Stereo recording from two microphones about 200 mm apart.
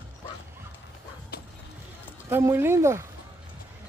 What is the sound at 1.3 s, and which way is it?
Music, 50° left (ahead or behind).